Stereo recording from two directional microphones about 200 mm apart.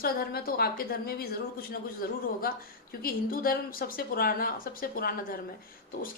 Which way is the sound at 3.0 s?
45° left (ahead or behind).